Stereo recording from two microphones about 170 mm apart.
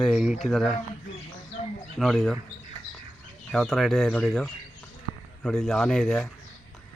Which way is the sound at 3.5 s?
Centre (ahead or behind).